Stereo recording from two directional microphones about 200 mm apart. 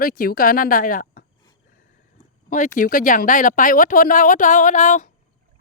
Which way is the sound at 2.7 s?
45° left (ahead or behind).